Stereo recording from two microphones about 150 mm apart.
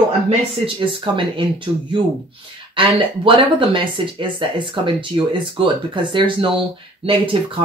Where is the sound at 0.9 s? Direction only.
35° right (ahead or behind).